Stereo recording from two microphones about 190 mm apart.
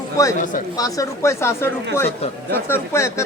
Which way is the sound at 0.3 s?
40° left (ahead or behind).